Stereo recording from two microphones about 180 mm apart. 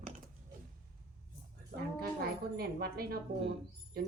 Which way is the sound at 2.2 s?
60° right (ahead or behind).